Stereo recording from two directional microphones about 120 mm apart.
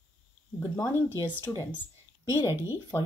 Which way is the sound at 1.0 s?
20° left (ahead or behind).